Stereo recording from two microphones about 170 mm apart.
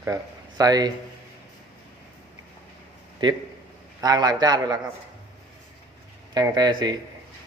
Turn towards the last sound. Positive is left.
turn(degrees=-25)  # may be behind; listen again after turning